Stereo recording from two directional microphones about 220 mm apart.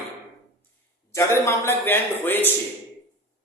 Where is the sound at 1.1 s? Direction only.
10° left (ahead or behind).